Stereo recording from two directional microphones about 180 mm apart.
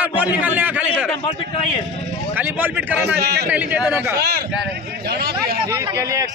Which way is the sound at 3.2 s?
65° right (ahead or behind).